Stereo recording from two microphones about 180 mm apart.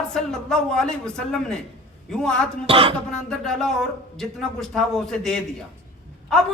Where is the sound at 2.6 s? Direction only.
30° right (ahead or behind).